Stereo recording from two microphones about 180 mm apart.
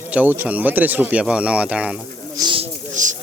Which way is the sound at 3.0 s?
45° right (ahead or behind).